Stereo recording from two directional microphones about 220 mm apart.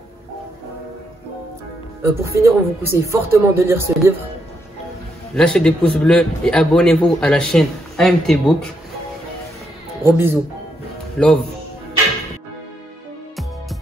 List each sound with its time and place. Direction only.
2.0 s speech: 10° right (ahead or behind)
5.3 s a man's voice: 5° left (ahead or behind)
10.0 s speech: 10° right (ahead or behind)
11.1 s a man's voice: 5° left (ahead or behind)